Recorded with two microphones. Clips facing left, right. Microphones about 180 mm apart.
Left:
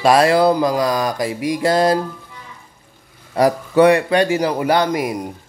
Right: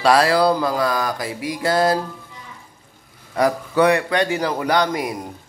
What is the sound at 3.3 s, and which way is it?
A man's voice, 30° left (ahead or behind).